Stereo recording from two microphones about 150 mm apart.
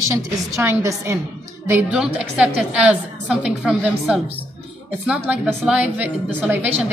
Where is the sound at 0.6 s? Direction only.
20° right (ahead or behind).